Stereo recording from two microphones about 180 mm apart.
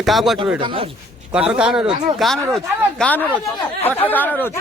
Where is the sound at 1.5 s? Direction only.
5° right (ahead or behind).